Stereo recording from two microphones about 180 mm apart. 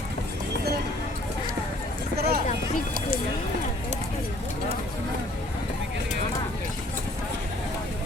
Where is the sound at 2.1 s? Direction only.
60° right (ahead or behind).